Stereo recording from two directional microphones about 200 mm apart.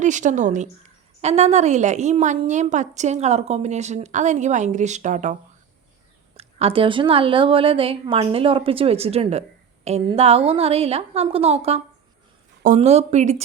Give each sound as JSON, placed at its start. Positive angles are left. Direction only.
{"t": 0.0, "sound": "a woman's voice", "side_deg": -40}